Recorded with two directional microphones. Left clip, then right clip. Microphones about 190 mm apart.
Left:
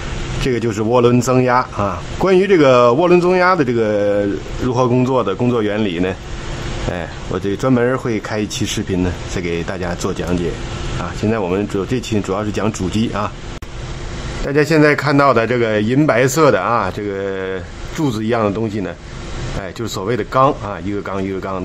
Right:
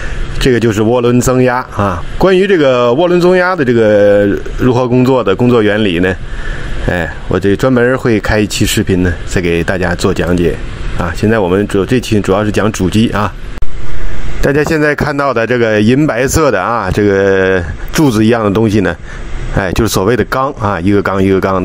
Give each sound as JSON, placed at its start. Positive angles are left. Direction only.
{"t": 0.4, "sound": "speech", "side_deg": -25}
{"t": 14.4, "sound": "speech", "side_deg": -40}